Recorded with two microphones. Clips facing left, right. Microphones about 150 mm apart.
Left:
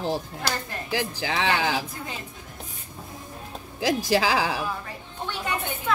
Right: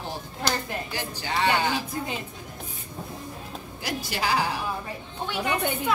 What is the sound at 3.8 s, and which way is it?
Speech, 90° left.